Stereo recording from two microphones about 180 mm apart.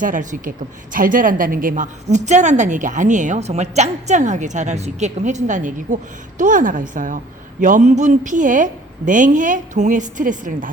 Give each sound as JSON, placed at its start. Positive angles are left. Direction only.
{"t": 0.0, "sound": "a woman's voice", "side_deg": -45}